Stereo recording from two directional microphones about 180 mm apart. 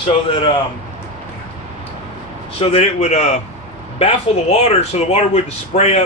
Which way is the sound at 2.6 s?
35° left (ahead or behind).